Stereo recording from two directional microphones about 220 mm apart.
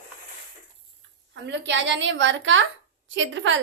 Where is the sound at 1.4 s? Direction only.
55° right (ahead or behind).